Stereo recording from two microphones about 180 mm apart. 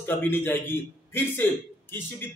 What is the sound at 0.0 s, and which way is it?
A man's voice, 10° left (ahead or behind).